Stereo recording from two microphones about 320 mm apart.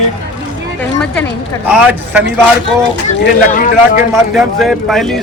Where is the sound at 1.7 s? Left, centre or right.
Centre.